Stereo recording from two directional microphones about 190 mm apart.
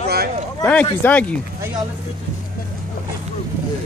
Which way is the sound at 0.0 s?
55° right (ahead or behind).